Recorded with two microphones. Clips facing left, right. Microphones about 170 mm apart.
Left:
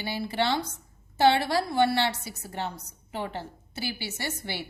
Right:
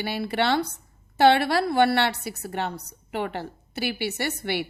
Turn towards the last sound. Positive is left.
turn(degrees=-65)  # may be behind; listen again after turning